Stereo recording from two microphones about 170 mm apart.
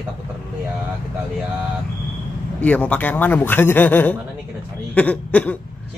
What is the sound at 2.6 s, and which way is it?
A man's voice, 10° left (ahead or behind).